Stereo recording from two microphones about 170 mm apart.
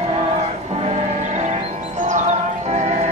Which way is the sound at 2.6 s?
45° right (ahead or behind).